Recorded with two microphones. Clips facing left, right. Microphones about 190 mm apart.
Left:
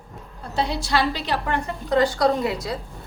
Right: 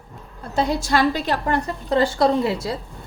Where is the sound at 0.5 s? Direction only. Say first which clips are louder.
Right 3 dB; 45° right (ahead or behind); by 2.7 s 25° right (ahead or behind).